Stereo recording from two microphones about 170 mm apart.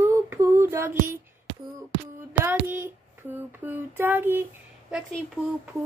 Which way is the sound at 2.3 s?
10° right (ahead or behind).